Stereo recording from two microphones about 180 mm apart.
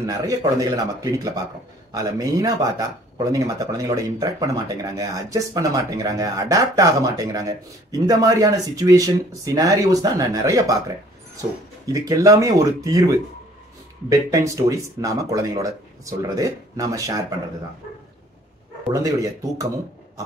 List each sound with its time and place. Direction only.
0.0 s speech: 20° right (ahead or behind)
11.8 s speech: 20° right (ahead or behind)
19.0 s speech: 20° right (ahead or behind)